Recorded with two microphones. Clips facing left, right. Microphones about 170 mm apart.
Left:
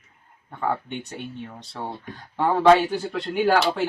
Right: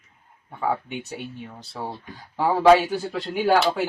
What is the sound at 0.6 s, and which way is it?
Speech, 5° right (ahead or behind).